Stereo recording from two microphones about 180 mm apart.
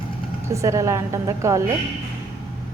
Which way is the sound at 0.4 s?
15° right (ahead or behind).